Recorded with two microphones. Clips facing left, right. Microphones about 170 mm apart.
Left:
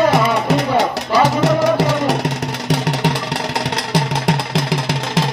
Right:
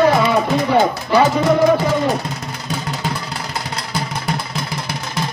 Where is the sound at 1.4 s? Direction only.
85° left.